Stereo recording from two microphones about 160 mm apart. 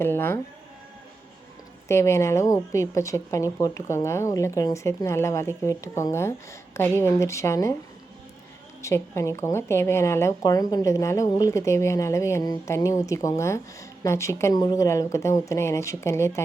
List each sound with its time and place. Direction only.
0.0 s music: 15° left (ahead or behind)
1.9 s a woman's voice: 15° left (ahead or behind)
8.8 s a woman's voice: 20° left (ahead or behind)